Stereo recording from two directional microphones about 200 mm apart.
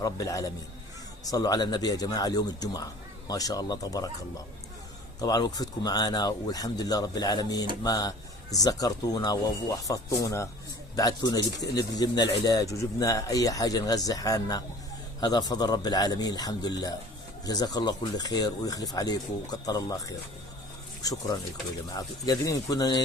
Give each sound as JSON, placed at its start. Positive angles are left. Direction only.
{"t": 0.0, "sound": "speech", "side_deg": 15}
{"t": 5.2, "sound": "speech", "side_deg": 20}